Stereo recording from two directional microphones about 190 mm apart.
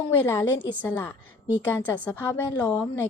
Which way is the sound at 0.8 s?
10° left (ahead or behind).